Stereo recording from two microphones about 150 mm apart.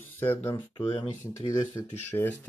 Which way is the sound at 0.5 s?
35° left (ahead or behind).